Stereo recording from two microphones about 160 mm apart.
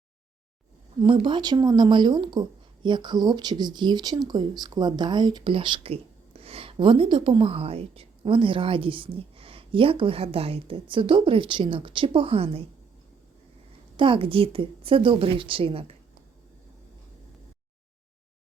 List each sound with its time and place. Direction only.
1.0 s speech: 30° right (ahead or behind)
13.9 s speech: 30° right (ahead or behind)